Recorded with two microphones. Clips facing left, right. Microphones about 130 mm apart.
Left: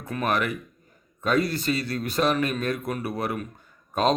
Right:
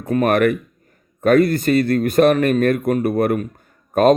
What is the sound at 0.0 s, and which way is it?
Speech, 50° right (ahead or behind).